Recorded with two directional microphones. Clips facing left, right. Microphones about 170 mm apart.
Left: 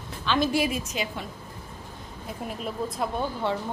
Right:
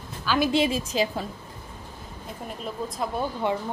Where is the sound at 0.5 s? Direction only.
25° right (ahead or behind).